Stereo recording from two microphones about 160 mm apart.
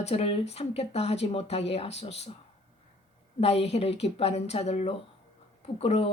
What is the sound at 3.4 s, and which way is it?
Speech, 40° left (ahead or behind).